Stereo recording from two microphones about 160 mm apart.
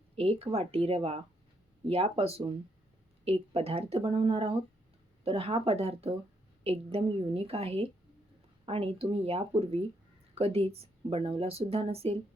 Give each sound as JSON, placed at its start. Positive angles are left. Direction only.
{"t": 0.2, "sound": "a woman's voice", "side_deg": -40}